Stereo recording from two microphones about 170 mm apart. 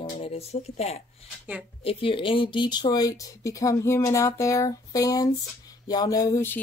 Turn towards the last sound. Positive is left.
turn(degrees=15)  # may be behind; listen again after turning